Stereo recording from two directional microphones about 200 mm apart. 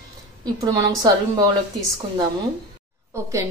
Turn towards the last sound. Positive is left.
turn(degrees=-15)  # may be behind; listen again after turning